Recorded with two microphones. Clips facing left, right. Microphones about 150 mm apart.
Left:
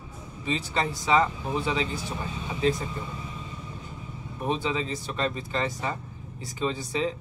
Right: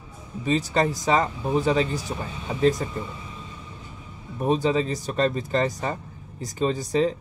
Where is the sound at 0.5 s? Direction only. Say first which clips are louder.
Right 6 dB; 40° right (ahead or behind).